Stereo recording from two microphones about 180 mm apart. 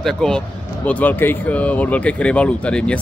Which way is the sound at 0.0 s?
Centre (ahead or behind).